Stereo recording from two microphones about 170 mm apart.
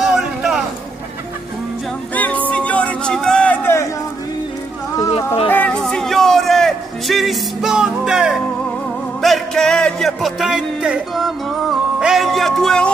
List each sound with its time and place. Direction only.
0.0 s a sound: 5° right (ahead or behind)
2.1 s music: 10° left (ahead or behind)
5.1 s music: 35° left (ahead or behind)
5.5 s music: 10° left (ahead or behind)